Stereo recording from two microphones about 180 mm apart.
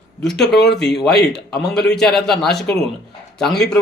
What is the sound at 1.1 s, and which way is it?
Speech, 65° left (ahead or behind).